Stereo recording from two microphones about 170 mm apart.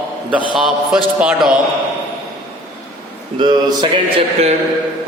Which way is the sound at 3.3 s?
25° right (ahead or behind).